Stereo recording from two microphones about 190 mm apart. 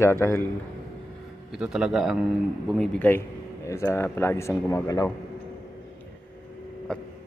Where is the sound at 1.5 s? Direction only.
Centre (ahead or behind); by 5.1 s 15° left (ahead or behind).